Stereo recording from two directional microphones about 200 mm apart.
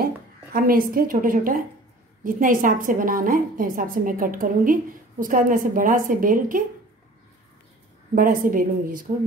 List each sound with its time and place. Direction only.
0.0 s a woman's voice: 50° right (ahead or behind)
8.1 s a woman's voice: 45° right (ahead or behind)